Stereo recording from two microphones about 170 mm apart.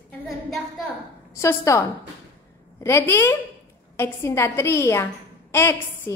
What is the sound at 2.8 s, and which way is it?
A woman's voice, 15° left (ahead or behind).